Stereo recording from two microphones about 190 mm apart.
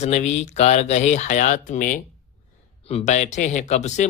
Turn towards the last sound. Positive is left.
turn(degrees=40)  # may be behind; listen again after turning